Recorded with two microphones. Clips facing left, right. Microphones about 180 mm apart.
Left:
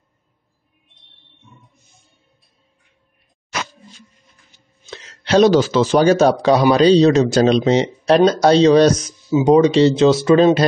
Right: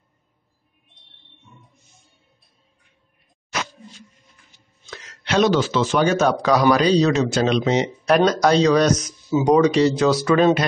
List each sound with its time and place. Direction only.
4.8 s speech: 25° left (ahead or behind)